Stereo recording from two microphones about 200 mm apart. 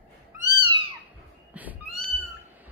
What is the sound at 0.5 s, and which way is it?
Cat, 25° right (ahead or behind).